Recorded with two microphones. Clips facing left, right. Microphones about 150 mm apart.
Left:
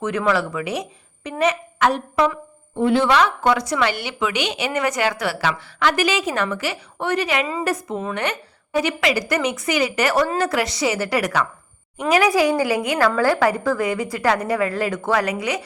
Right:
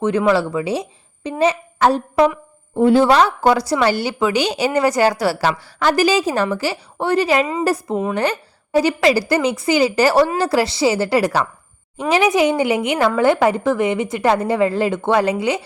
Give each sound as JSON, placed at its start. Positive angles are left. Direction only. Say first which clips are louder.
{"t": 0.0, "sound": "a woman's voice", "louder": "right 5 dB", "side_deg": -30}